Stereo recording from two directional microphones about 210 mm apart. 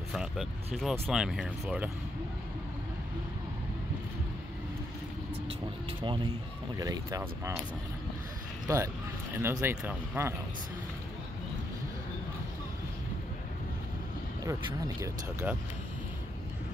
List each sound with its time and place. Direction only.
0.1 s speech: centre (ahead or behind)
5.9 s speech: 25° right (ahead or behind)
8.6 s speech: 15° right (ahead or behind)
14.4 s speech: 15° right (ahead or behind)